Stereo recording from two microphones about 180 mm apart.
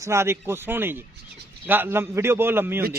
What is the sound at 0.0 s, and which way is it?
A man's voice, 15° right (ahead or behind).